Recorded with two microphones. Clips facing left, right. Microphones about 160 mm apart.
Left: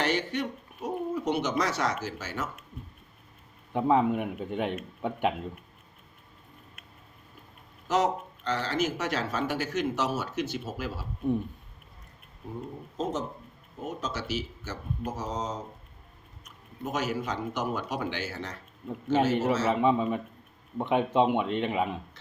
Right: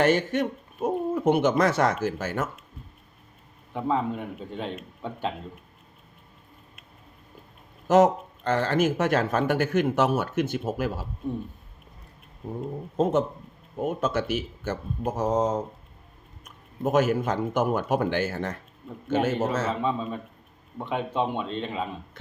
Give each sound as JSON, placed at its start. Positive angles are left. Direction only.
{"t": 0.0, "sound": "speech", "side_deg": -50}
{"t": 3.7, "sound": "a man's voice", "side_deg": 15}
{"t": 7.9, "sound": "speech", "side_deg": -50}
{"t": 13.0, "sound": "speech", "side_deg": -60}
{"t": 19.6, "sound": "a man's voice", "side_deg": 15}